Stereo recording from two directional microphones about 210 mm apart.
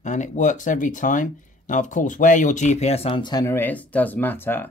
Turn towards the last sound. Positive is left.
turn(degrees=10)  # may be behind; listen again after turning